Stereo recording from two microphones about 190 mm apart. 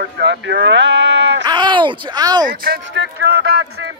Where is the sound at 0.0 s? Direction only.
65° right (ahead or behind).